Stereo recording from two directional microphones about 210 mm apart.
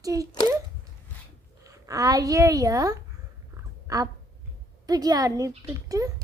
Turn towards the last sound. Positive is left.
turn(degrees=-15)  # may be behind; listen again after turning